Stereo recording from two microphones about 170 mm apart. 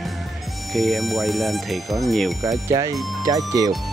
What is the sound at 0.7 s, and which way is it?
Speech, centre (ahead or behind).